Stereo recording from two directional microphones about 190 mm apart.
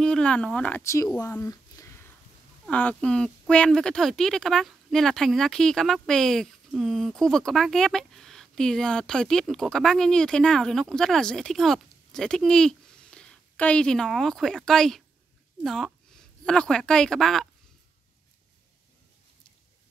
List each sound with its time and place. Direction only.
0.0 s speech: 5° left (ahead or behind)
1.2 s a sound: 15° left (ahead or behind)
2.6 s speech: 5° left (ahead or behind)